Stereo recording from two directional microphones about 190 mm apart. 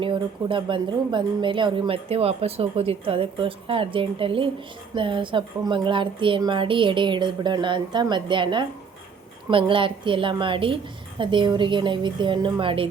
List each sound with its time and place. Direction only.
0.0 s speech: 25° right (ahead or behind)